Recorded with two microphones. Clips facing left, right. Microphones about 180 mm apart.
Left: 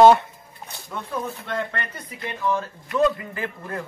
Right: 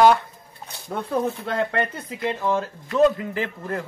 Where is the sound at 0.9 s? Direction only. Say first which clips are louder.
Right 5 dB; 60° right (ahead or behind).